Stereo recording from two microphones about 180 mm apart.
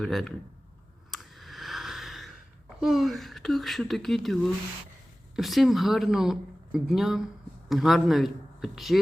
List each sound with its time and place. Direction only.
0.0 s speech: centre (ahead or behind)
1.1 s a sound: centre (ahead or behind)
2.8 s speech: centre (ahead or behind)